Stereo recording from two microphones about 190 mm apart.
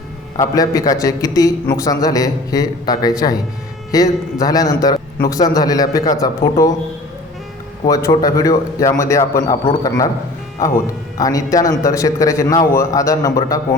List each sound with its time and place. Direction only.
0.3 s a man's voice: 20° left (ahead or behind)
7.9 s a man's voice: 15° left (ahead or behind)
11.2 s a man's voice: 20° left (ahead or behind)